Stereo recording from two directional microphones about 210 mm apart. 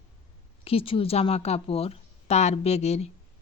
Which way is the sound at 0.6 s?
25° left (ahead or behind).